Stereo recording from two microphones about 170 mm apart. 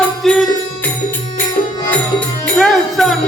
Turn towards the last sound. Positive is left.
turn(degrees=0)  # may be behind; listen again after turning